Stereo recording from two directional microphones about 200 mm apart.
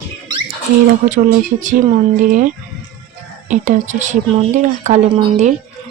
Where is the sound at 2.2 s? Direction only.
40° right (ahead or behind).